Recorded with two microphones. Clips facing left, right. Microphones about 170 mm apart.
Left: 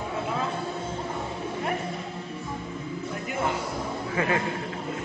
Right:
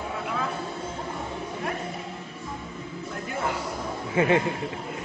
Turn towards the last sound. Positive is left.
turn(degrees=-25)  # may be behind; listen again after turning